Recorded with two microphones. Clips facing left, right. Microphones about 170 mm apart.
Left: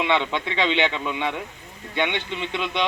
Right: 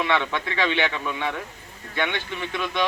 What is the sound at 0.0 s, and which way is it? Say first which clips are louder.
A man's voice: left 1 dB; 20° left (ahead or behind).